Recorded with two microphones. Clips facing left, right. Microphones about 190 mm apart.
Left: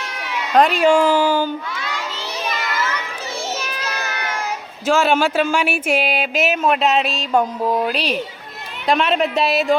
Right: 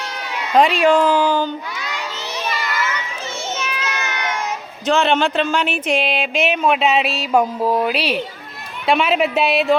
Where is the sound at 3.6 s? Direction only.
35° left (ahead or behind).